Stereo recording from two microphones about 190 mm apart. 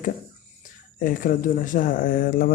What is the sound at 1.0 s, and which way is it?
Speech, 45° left (ahead or behind).